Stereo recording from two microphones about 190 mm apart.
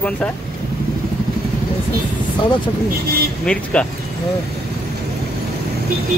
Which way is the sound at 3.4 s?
5° left (ahead or behind).